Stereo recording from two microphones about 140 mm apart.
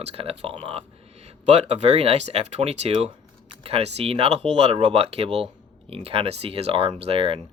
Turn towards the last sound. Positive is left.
turn(degrees=-45)  # may be behind; listen again after turning